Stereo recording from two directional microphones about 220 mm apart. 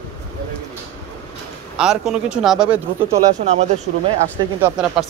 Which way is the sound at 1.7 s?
Centre (ahead or behind).